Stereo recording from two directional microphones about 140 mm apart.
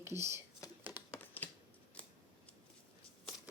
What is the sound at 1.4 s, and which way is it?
Scissors, 15° left (ahead or behind).